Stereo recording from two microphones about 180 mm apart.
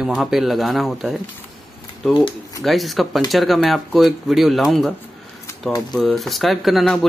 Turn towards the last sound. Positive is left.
turn(degrees=0)  # may be behind; listen again after turning